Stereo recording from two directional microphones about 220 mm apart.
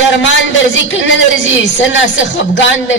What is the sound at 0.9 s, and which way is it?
A man's voice, 60° left (ahead or behind).